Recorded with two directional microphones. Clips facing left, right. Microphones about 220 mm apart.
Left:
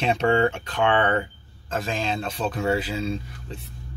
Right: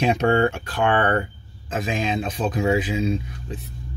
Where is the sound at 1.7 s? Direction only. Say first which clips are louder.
Right 3 dB; 10° right (ahead or behind).